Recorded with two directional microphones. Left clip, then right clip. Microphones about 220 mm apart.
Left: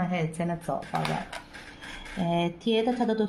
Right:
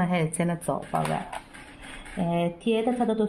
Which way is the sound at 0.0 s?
45° right (ahead or behind).